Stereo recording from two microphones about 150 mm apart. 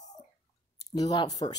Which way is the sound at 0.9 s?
25° left (ahead or behind).